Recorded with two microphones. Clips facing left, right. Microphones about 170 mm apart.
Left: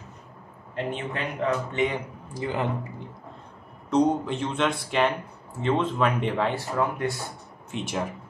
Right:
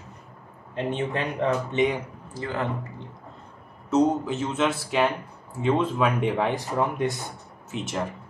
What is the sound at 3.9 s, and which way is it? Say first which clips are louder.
Speech: right 1 dB; 5° right (ahead or behind).